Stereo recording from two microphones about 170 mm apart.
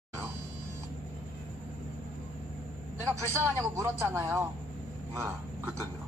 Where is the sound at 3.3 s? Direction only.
15° right (ahead or behind).